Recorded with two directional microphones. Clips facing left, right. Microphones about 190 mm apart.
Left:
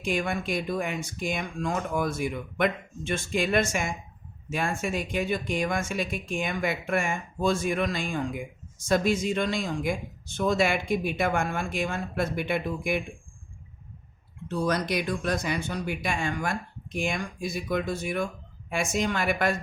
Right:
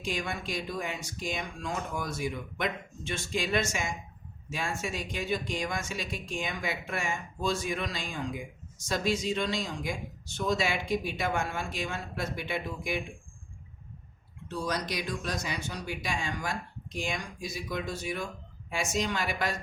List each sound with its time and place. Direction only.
0.0 s speech: 55° left (ahead or behind)
14.5 s speech: 55° left (ahead or behind)